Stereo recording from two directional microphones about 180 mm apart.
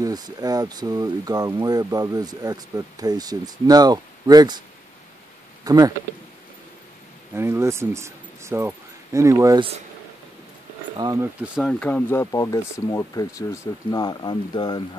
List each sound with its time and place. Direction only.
0.0 s speech: 20° right (ahead or behind)
5.6 s speech: 20° right (ahead or behind)
7.3 s speech: 15° right (ahead or behind)
11.1 s speech: 5° right (ahead or behind)
11.8 s speech: 10° left (ahead or behind)